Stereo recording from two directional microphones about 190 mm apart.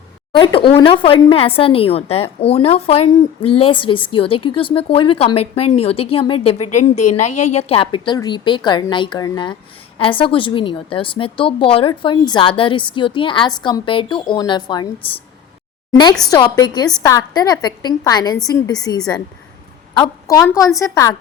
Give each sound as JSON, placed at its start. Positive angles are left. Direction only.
{"t": 0.3, "sound": "speech", "side_deg": 25}
{"t": 15.9, "sound": "a woman's voice", "side_deg": 20}